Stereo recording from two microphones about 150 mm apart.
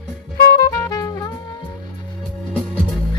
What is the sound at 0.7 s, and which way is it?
Music, 20° left (ahead or behind).